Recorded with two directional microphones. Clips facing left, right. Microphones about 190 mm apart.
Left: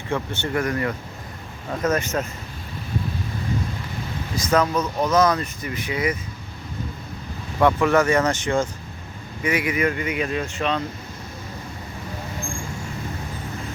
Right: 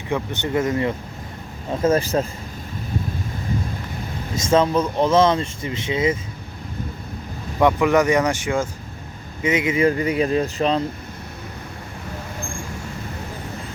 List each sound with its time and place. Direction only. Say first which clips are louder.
0.1 s speech: right 2 dB; 15° right (ahead or behind)
4.4 s speech: right 3 dB; 25° right (ahead or behind)
7.6 s speech: right 1 dB; 15° right (ahead or behind)
9.4 s speech: right 4 dB; 20° right (ahead or behind)